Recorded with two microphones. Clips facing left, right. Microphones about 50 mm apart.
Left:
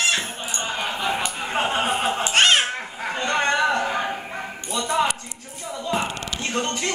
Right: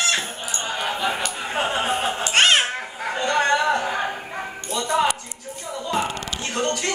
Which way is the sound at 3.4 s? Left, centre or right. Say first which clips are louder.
Right 1 dB; left.